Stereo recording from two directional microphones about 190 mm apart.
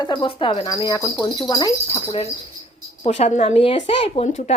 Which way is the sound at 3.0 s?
35° left (ahead or behind).